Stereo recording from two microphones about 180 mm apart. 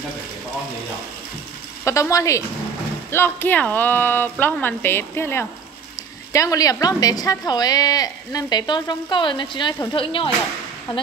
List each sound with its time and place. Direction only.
1.9 s a woman's voice: 15° left (ahead or behind)